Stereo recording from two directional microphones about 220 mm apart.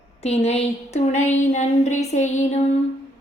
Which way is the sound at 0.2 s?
30° left (ahead or behind).